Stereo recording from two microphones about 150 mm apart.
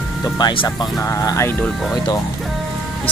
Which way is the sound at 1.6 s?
Centre (ahead or behind).